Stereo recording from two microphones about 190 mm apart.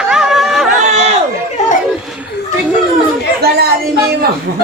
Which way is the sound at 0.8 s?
35° right (ahead or behind).